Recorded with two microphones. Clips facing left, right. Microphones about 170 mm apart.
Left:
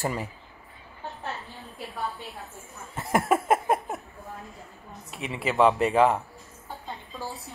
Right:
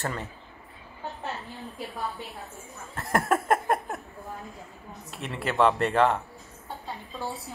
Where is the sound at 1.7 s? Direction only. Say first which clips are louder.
Left 1 dB; centre (ahead or behind).